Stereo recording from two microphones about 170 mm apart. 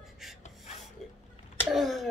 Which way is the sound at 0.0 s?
Centre (ahead or behind).